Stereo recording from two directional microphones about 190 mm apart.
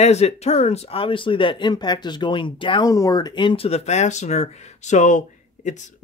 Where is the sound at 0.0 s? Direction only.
35° left (ahead or behind).